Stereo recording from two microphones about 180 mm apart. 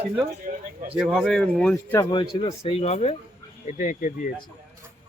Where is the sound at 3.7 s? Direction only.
45° left (ahead or behind).